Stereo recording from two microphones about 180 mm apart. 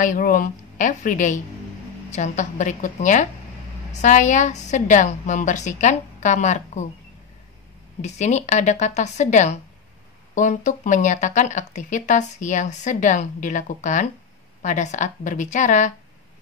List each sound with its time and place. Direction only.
0.0 s speech: 50° left (ahead or behind)
8.0 s a woman's voice: 40° left (ahead or behind)